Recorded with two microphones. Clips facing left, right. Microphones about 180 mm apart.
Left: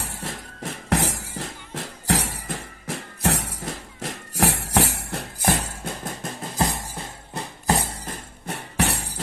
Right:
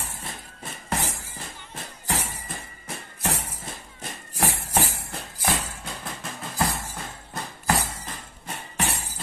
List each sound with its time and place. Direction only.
0.2 s music: 80° left
5.4 s a sound: 45° left (ahead or behind)
7.0 s music: 25° left (ahead or behind)
8.5 s music: 70° left (ahead or behind)